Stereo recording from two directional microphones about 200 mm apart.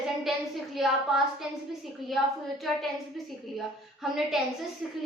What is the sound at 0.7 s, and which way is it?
Child singing, centre (ahead or behind).